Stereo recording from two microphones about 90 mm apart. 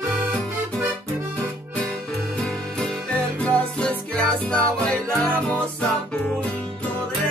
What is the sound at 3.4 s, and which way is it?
Music, 15° left (ahead or behind).